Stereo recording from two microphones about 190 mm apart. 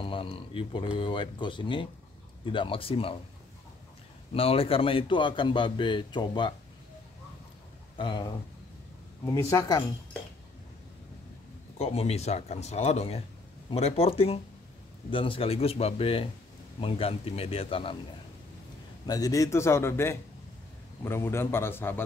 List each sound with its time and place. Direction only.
0.0 s a man's voice: 30° left (ahead or behind)
4.3 s a man's voice: 30° left (ahead or behind)
8.0 s a man's voice: 25° left (ahead or behind)
11.8 s a man's voice: 30° left (ahead or behind)
19.0 s a man's voice: 20° left (ahead or behind)